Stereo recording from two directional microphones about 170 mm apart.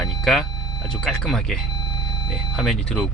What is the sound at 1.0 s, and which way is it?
Speech, centre (ahead or behind).